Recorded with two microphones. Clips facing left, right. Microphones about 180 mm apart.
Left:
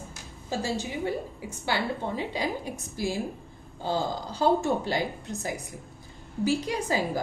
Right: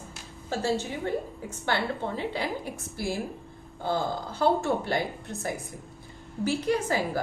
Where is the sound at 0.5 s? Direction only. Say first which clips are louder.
Right 2 dB; 15° left (ahead or behind).